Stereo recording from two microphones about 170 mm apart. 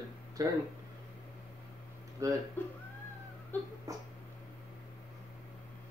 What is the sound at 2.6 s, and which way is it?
Speech, 10° left (ahead or behind).